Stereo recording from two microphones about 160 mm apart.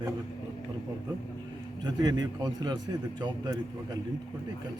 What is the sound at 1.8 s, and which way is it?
A man's voice, 25° right (ahead or behind).